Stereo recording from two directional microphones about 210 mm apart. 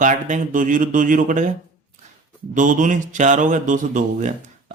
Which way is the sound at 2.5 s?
40° right (ahead or behind).